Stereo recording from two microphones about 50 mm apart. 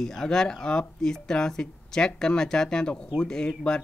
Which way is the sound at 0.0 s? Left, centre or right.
Centre.